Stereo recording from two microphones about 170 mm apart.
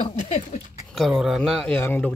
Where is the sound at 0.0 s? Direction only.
35° left (ahead or behind).